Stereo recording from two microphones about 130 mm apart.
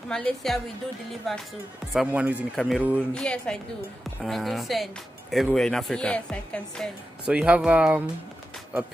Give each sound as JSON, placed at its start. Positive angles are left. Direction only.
{"t": 0.1, "sound": "speech", "side_deg": 5}
{"t": 7.2, "sound": "speech", "side_deg": -10}